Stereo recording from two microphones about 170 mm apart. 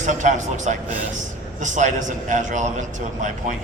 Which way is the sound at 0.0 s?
45° right (ahead or behind).